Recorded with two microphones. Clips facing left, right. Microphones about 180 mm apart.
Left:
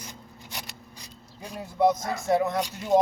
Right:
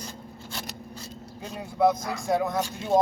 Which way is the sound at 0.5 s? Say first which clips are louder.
Right 2 dB; 15° left (ahead or behind).